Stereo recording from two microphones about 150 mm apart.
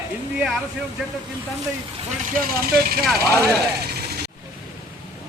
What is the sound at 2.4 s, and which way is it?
Speech, 75° right (ahead or behind).